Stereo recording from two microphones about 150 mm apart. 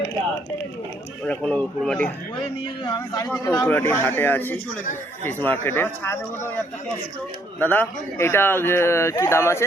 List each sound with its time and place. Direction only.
1.2 s a man's voice: 10° left (ahead or behind)
2.8 s a man's voice: 25° left (ahead or behind)
3.4 s a man's voice: 15° left (ahead or behind)